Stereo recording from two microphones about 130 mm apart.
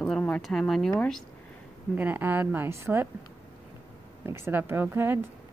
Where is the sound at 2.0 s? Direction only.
15° right (ahead or behind).